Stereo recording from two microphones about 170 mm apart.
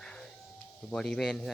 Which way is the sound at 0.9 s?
5° left (ahead or behind).